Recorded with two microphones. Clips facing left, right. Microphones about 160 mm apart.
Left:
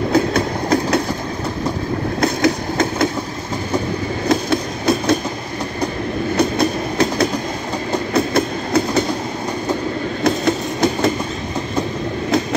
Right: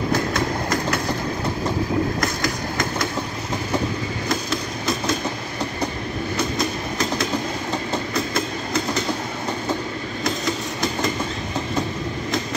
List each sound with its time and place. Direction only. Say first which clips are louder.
0.1 s train: left 7 dB; 60° left (ahead or behind)
2.1 s train: left 8 dB; 60° left (ahead or behind)
4.3 s a sound: left 9 dB; 60° left (ahead or behind)
6.3 s train: left 8 dB; 60° left (ahead or behind)
10.2 s train: left 8 dB; 55° left (ahead or behind)